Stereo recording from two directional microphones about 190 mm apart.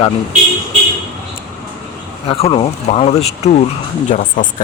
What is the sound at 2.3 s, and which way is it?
Speech, 30° left (ahead or behind).